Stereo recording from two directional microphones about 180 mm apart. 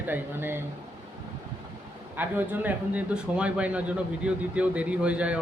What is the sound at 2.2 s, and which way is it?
Speech, 10° right (ahead or behind).